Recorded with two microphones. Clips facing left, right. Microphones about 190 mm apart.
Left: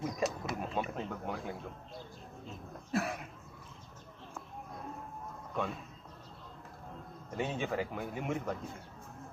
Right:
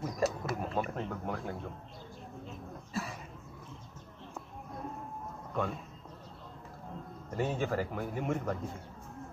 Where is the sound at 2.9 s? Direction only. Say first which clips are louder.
Left 5 dB; 65° left (ahead or behind).